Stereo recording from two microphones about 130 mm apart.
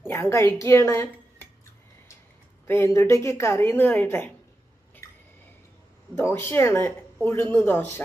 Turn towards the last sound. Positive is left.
turn(degrees=15)  # may be behind; listen again after turning